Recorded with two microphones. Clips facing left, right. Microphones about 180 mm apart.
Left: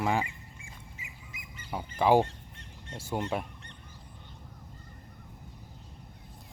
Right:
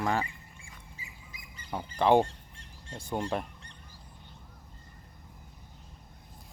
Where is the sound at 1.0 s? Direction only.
35° right (ahead or behind).